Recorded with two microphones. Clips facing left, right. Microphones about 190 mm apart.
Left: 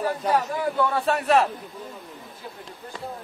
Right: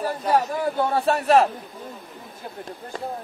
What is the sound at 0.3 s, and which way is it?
A man's voice, 40° right (ahead or behind).